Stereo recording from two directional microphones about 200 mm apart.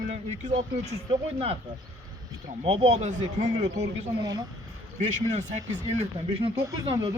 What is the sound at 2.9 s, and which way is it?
Speech, 35° right (ahead or behind).